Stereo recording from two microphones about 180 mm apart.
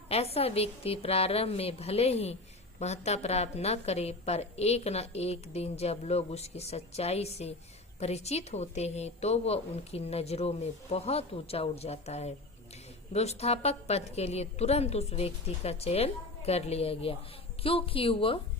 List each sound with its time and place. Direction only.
0.1 s a woman's voice: 35° left (ahead or behind)